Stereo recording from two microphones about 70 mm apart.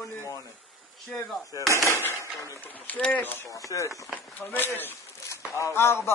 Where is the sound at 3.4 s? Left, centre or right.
Left.